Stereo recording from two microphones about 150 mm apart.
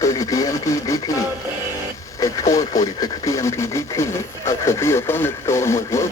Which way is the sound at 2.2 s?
20° left (ahead or behind).